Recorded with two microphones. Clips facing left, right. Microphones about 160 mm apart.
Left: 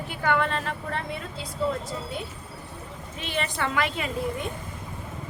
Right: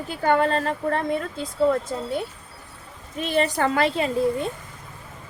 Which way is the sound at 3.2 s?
40° right (ahead or behind).